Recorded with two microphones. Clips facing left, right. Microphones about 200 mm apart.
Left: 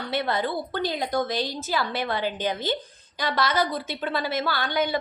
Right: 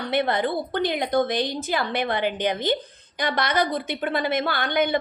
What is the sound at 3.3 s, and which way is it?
Speech, 15° right (ahead or behind).